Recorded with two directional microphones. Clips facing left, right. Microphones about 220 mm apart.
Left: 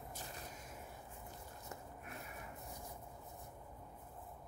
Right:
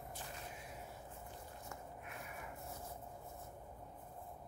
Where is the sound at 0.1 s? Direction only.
40° left (ahead or behind).